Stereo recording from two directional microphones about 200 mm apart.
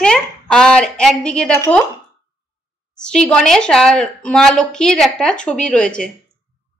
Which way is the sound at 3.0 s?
5° left (ahead or behind).